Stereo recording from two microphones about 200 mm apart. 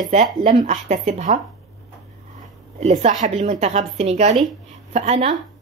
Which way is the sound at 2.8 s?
35° right (ahead or behind).